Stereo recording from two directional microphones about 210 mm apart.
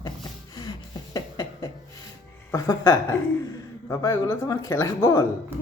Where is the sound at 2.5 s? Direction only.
15° left (ahead or behind).